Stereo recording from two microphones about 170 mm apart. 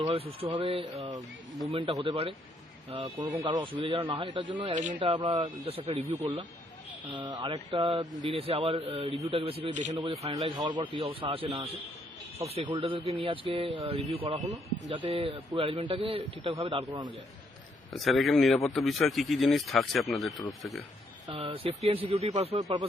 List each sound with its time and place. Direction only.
0.0 s speech: 35° right (ahead or behind)
4.7 s speech: 45° right (ahead or behind)
4.9 s speech: 30° right (ahead or behind)
12.5 s speech: 30° right (ahead or behind)
14.3 s speech: 20° right (ahead or behind)
14.8 s speech: 30° right (ahead or behind)
17.9 s speech: centre (ahead or behind)
21.2 s speech: 30° right (ahead or behind)